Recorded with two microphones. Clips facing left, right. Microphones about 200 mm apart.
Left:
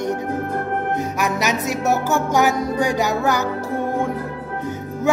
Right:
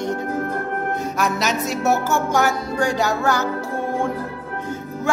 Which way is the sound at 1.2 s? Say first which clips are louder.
Right 1 dB; 15° left (ahead or behind).